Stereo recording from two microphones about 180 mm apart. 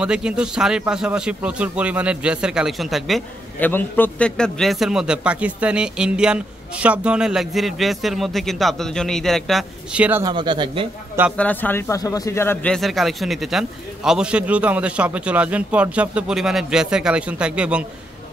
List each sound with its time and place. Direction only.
0.0 s a man's voice: 5° right (ahead or behind)
10.2 s speech: 25° right (ahead or behind)
11.3 s a man's voice: 10° left (ahead or behind)
12.7 s a man's voice: centre (ahead or behind)